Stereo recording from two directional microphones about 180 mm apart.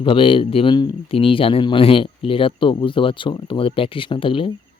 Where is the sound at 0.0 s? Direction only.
30° left (ahead or behind).